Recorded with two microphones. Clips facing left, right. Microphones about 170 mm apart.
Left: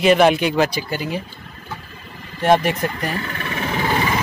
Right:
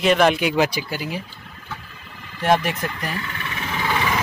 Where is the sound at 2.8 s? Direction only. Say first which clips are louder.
Left 4 dB; 40° left (ahead or behind).